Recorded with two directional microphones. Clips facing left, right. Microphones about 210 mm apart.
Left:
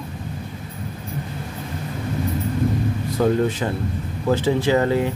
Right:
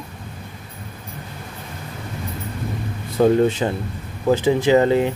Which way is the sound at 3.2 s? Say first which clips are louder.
Right 4 dB; 25° right (ahead or behind).